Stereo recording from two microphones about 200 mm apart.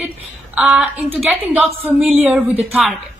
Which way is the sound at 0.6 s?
5° right (ahead or behind).